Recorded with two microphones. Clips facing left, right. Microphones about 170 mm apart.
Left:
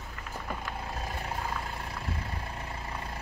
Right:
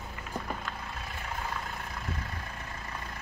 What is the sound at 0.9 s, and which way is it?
Vehicle, 35° left (ahead or behind).